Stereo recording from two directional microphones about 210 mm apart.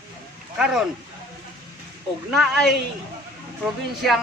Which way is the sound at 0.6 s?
5° right (ahead or behind).